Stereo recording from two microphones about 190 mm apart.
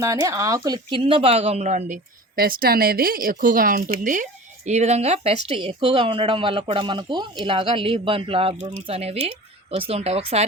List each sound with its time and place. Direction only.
0.0 s speech: 15° right (ahead or behind); by 10.4 s 30° right (ahead or behind)